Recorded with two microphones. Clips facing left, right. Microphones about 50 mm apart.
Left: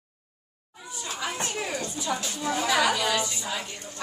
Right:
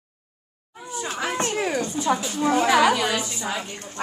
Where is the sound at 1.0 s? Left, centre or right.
Right.